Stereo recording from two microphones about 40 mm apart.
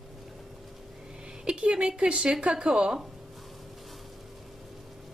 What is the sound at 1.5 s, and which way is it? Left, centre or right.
A woman's voice, right.